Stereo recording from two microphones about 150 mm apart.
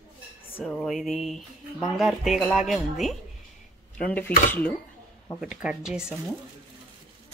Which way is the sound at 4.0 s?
10° left (ahead or behind).